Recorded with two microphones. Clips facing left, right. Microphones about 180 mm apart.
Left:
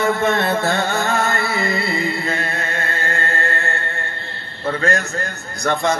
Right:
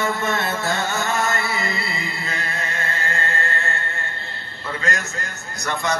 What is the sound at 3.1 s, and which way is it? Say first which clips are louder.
Mantra: left 4 dB; 35° left (ahead or behind).